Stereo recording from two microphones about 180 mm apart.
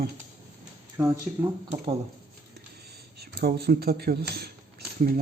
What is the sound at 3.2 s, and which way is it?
Speech, 60° right (ahead or behind).